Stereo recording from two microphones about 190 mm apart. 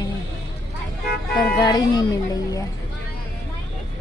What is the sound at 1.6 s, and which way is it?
Speech, 20° left (ahead or behind).